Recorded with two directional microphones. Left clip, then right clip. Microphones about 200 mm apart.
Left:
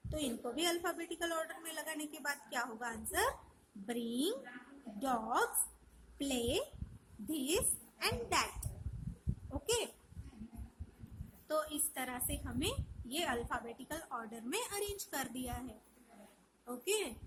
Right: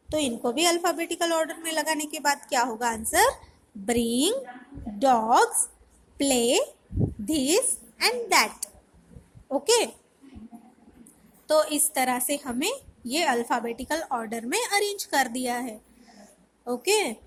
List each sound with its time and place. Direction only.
0.1 s a woman's voice: 15° right (ahead or behind)
11.4 s a woman's voice: 20° right (ahead or behind)